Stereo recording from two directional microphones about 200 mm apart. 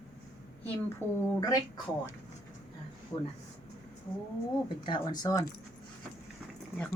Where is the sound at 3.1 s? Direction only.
25° left (ahead or behind).